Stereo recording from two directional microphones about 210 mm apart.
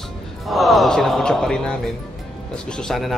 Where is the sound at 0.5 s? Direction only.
Centre (ahead or behind).